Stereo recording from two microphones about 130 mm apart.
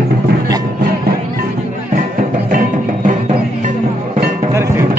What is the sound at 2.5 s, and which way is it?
Music, 90° right.